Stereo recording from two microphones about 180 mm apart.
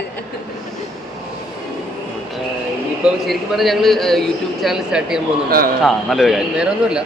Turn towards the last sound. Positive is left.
turn(degrees=-5)  # may be behind; listen again after turning